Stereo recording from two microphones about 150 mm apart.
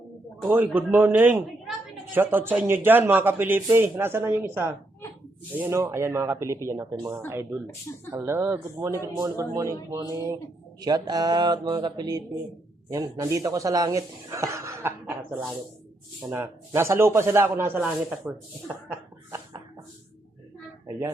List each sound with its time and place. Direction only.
0.4 s a man's voice: 15° right (ahead or behind)
16.3 s a man's voice: 15° right (ahead or behind)